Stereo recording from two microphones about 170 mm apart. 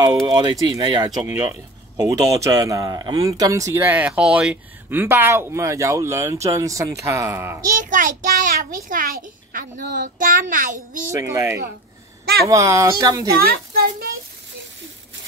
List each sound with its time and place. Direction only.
0.0 s speech: 20° right (ahead or behind)
7.6 s a child's voice: 50° right (ahead or behind)
11.1 s speech: 15° right (ahead or behind)
13.4 s a woman's voice: 60° right (ahead or behind)